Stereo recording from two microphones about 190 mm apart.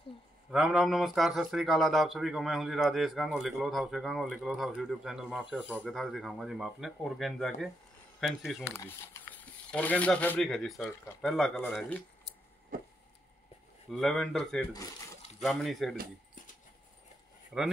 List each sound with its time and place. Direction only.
0.5 s speech: centre (ahead or behind)
8.7 s speech: 10° left (ahead or behind)
12.7 s a sound: 50° right (ahead or behind)
13.8 s speech: centre (ahead or behind)
17.5 s speech: 10° right (ahead or behind)